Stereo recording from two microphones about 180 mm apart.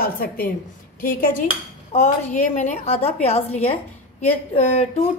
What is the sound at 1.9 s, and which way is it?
A woman's voice, 40° left (ahead or behind).